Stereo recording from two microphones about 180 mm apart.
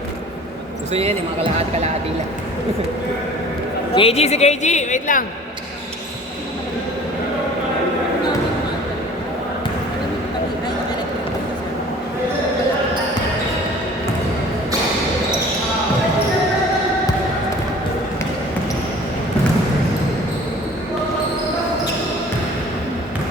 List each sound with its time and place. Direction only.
0.9 s speech: 35° right (ahead or behind)
3.9 s speech: 35° left (ahead or behind)